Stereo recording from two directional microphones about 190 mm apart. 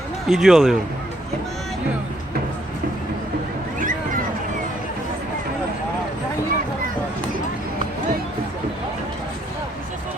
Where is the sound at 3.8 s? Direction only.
45° right (ahead or behind).